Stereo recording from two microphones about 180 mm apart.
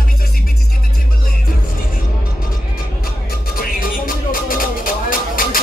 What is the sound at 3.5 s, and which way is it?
Music, 50° left (ahead or behind).